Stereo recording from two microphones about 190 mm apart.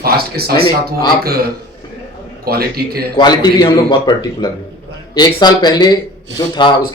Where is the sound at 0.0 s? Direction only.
55° right (ahead or behind).